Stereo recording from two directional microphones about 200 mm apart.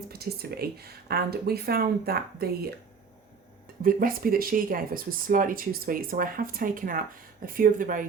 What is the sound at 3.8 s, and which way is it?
Speech, 45° right (ahead or behind).